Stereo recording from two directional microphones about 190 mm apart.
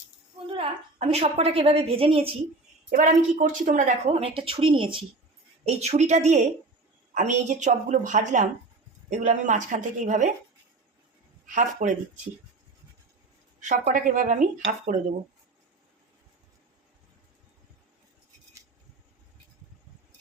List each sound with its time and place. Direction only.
0.3 s a woman's voice: 30° right (ahead or behind)
2.9 s a woman's voice: 40° right (ahead or behind)
11.5 s a woman's voice: 40° right (ahead or behind)
13.6 s a woman's voice: 40° right (ahead or behind)